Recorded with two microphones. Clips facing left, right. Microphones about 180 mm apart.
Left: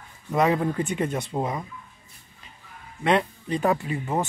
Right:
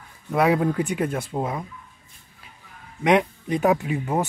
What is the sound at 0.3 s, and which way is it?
Speech, 5° right (ahead or behind).